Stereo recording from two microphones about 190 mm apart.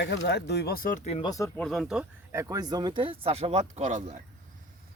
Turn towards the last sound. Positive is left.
turn(degrees=-40)  # may be behind; listen again after turning